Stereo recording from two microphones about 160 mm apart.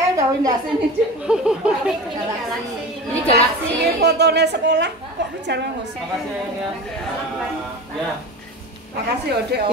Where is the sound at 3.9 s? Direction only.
90° right.